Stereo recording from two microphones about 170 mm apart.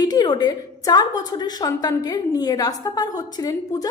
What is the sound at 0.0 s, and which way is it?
A woman's voice, 25° left (ahead or behind).